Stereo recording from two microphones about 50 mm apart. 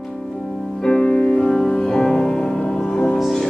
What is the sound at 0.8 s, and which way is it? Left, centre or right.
Music, centre.